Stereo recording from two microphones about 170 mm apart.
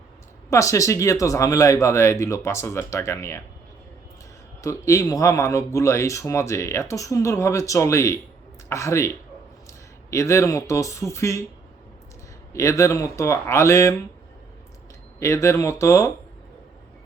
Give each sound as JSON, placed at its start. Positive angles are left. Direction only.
{"t": 0.5, "sound": "speech", "side_deg": 20}
{"t": 4.6, "sound": "speech", "side_deg": 20}
{"t": 12.5, "sound": "speech", "side_deg": 20}
{"t": 15.2, "sound": "speech", "side_deg": 15}